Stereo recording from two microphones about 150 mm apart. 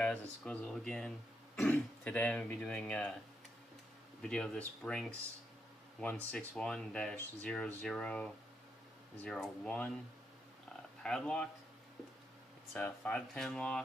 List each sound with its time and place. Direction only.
0.0 s speech: 5° left (ahead or behind)
4.2 s speech: 5° left (ahead or behind)
11.0 s speech: 5° left (ahead or behind)
12.7 s speech: 5° left (ahead or behind)